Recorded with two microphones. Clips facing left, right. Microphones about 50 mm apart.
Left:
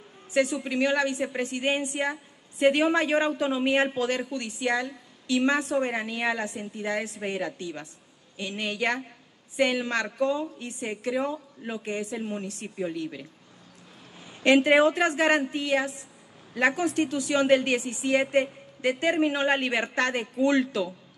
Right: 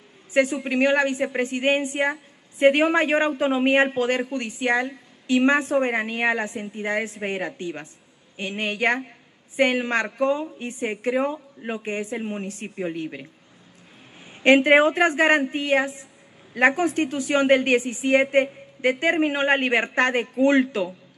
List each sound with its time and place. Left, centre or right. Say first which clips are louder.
0.3 s a woman's voice: right 4 dB; right